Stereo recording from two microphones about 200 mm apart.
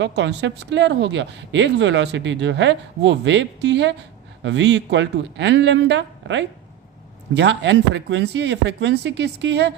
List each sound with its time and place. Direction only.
0.0 s a woman's voice: 60° right (ahead or behind)